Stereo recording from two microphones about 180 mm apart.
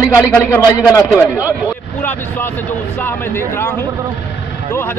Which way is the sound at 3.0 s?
15° left (ahead or behind).